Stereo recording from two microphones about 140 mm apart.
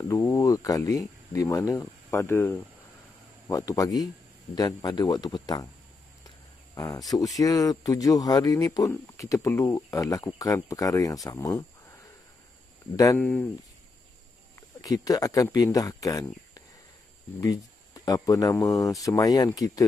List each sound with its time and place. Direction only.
0.1 s speech: 25° left (ahead or behind)
6.7 s a sound: 25° left (ahead or behind)
7.3 s speech: 25° left (ahead or behind)
12.9 s speech: 25° left (ahead or behind)
13.2 s speech: 10° left (ahead or behind)
14.8 s speech: 25° left (ahead or behind)